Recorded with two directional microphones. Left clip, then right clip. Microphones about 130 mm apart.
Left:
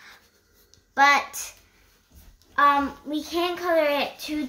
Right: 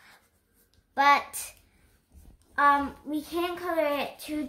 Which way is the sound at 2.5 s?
35° right (ahead or behind).